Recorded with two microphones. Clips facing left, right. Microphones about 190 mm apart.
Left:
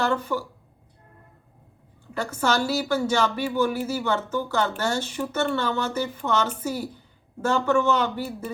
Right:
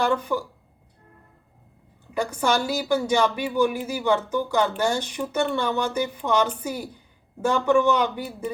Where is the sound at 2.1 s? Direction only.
15° right (ahead or behind).